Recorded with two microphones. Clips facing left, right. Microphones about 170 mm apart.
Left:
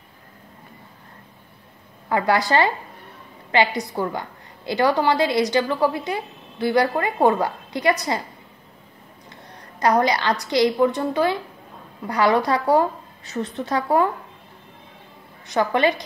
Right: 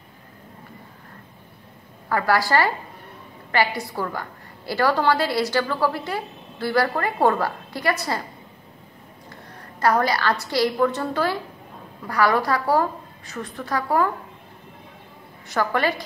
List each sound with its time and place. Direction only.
2.0 s a woman's voice: 20° left (ahead or behind)
9.3 s a woman's voice: 20° left (ahead or behind)
15.4 s a woman's voice: 20° left (ahead or behind)